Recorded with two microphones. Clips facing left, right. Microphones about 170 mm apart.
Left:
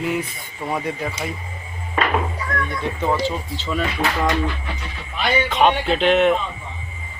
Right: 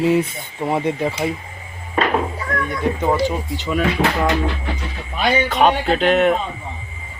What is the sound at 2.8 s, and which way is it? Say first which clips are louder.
Speech: right 4 dB; 15° right (ahead or behind).